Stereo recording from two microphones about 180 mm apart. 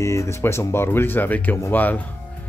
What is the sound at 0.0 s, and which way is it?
Speech, 15° left (ahead or behind).